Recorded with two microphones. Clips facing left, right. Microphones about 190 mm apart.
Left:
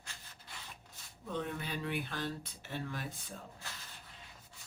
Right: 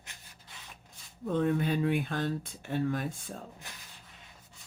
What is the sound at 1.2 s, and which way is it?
Speech, 50° right (ahead or behind).